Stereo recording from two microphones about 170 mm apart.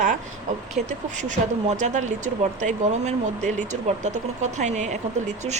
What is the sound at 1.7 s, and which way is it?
Speech, 45° right (ahead or behind).